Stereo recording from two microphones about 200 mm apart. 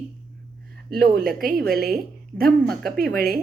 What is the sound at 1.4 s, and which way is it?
Speech, 50° right (ahead or behind).